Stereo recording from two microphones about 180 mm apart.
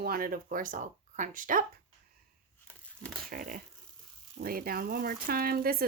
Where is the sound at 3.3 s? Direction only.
50° right (ahead or behind).